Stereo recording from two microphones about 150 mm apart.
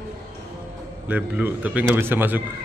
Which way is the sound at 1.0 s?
10° right (ahead or behind).